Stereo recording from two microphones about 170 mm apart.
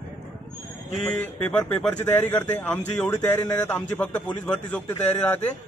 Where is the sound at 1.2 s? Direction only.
10° left (ahead or behind).